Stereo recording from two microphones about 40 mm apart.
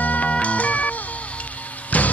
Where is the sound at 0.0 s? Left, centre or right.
Left.